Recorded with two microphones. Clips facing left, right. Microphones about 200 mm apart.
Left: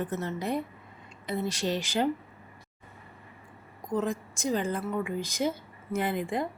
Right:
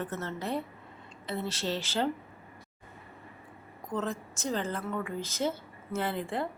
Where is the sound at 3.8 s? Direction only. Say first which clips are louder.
Left 4 dB; 10° left (ahead or behind).